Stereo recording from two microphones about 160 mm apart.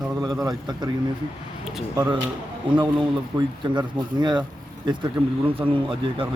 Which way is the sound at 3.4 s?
30° right (ahead or behind).